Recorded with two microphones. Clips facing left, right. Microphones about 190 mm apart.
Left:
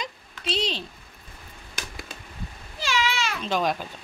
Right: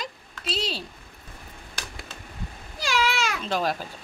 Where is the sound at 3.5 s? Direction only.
5° right (ahead or behind).